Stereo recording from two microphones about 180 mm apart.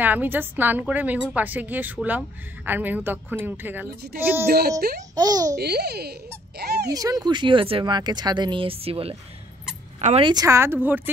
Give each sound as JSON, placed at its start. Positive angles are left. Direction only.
{"t": 0.0, "sound": "a woman's voice", "side_deg": -10}
{"t": 4.5, "sound": "speech", "side_deg": -60}
{"t": 5.1, "sound": "speech", "side_deg": -20}
{"t": 5.6, "sound": "speech", "side_deg": -65}
{"t": 6.9, "sound": "speech", "side_deg": -20}
{"t": 10.3, "sound": "a woman's voice", "side_deg": -15}